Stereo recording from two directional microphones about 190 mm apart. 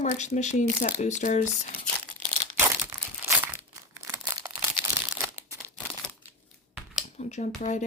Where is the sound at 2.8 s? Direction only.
10° right (ahead or behind).